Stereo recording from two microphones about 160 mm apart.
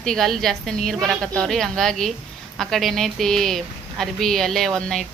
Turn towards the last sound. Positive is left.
turn(degrees=5)  # may be behind; listen again after turning